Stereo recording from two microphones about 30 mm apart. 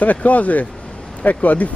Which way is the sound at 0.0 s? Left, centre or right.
Left.